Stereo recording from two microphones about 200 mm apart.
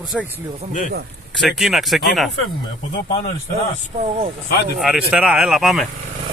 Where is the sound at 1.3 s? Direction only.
Centre (ahead or behind).